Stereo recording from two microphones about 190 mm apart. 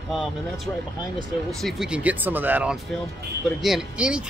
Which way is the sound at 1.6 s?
5° right (ahead or behind).